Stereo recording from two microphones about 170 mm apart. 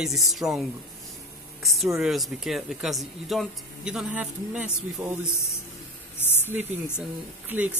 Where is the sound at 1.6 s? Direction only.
Centre (ahead or behind).